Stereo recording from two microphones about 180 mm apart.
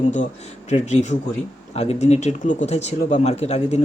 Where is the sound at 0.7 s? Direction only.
40° left (ahead or behind).